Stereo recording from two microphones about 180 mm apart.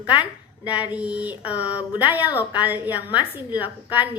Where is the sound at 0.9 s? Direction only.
5° right (ahead or behind).